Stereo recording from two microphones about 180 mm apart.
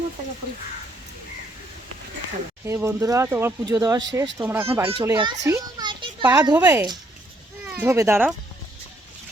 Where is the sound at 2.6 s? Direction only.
15° right (ahead or behind).